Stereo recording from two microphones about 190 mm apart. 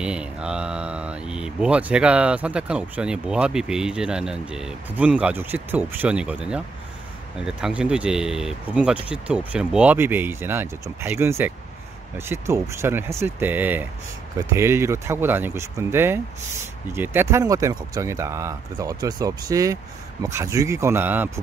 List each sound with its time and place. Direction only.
0.0 s speech: 5° right (ahead or behind)